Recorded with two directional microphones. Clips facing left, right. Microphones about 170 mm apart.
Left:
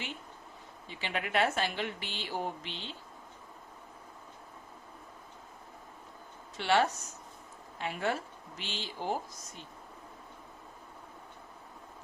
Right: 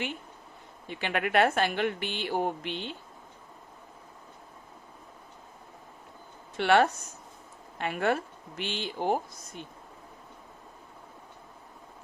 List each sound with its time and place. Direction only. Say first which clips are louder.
0.9 s a woman's voice: right 6 dB; 60° right (ahead or behind)
6.6 s a woman's voice: right 5 dB; 60° right (ahead or behind)